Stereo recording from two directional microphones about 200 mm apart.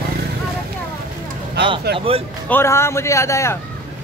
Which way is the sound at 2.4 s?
10° left (ahead or behind).